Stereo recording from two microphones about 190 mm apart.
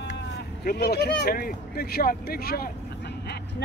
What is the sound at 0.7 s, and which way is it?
Speech, 55° left (ahead or behind).